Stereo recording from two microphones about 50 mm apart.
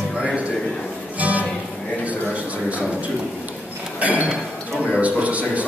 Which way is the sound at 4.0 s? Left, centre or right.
Right.